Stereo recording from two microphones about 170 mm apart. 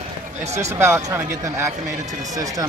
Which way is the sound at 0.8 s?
15° right (ahead or behind).